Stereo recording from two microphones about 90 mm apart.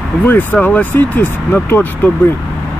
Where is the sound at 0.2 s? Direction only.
20° left (ahead or behind).